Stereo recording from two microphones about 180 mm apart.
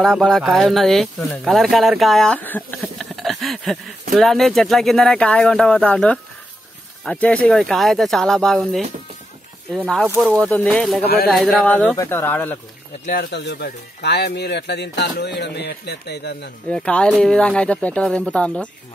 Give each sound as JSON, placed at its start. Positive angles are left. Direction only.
{"t": 0.0, "sound": "speech", "side_deg": 5}
{"t": 2.8, "sound": "a sound", "side_deg": 0}
{"t": 4.1, "sound": "speech", "side_deg": 0}
{"t": 10.2, "sound": "speech", "side_deg": 5}
{"t": 13.0, "sound": "speech", "side_deg": 60}
{"t": 16.7, "sound": "speech", "side_deg": 5}